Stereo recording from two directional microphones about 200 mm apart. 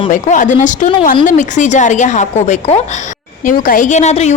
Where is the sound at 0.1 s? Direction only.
40° left (ahead or behind).